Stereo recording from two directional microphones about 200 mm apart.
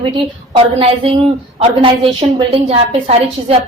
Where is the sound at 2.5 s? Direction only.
30° right (ahead or behind).